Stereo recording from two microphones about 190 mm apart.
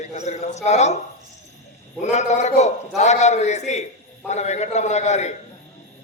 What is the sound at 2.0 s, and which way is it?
A man's voice, 35° left (ahead or behind).